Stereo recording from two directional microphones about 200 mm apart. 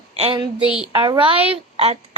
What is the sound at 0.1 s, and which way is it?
Speech, 30° right (ahead or behind).